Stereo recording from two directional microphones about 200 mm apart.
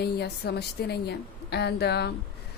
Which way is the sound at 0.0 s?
55° left (ahead or behind).